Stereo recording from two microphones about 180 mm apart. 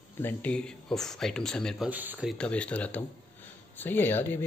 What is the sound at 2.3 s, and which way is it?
Speech, 5° left (ahead or behind).